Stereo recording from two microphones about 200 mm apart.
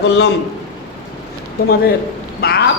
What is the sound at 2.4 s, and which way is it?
Speech, 50° left (ahead or behind).